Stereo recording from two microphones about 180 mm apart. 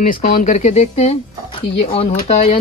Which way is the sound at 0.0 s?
45° left (ahead or behind).